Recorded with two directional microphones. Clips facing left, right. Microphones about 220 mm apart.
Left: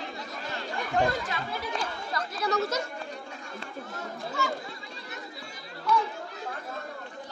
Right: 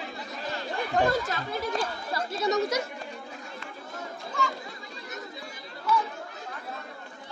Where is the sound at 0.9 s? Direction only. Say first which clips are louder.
Right 2 dB; 40° right (ahead or behind).